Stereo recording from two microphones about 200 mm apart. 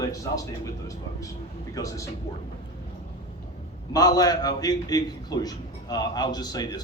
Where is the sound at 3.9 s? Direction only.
20° left (ahead or behind).